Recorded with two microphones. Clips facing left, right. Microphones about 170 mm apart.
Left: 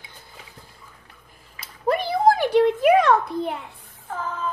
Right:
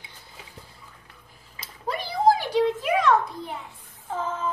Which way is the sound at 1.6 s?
55° left (ahead or behind).